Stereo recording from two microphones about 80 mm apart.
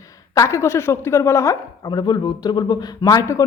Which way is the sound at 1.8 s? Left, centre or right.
Left.